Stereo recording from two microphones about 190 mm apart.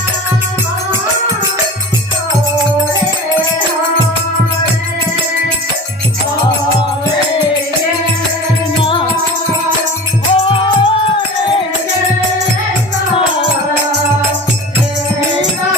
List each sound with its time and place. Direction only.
8.8 s music: 30° left (ahead or behind)
10.3 s music: 30° left (ahead or behind)